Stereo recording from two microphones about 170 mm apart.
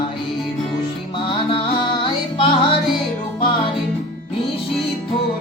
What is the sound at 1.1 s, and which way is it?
Music, 30° left (ahead or behind).